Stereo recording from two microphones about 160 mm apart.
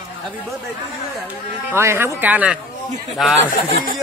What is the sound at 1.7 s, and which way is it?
A man's voice, 15° right (ahead or behind).